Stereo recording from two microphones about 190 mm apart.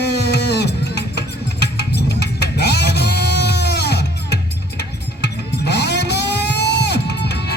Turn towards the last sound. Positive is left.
turn(degrees=60)  # may be behind; listen again after turning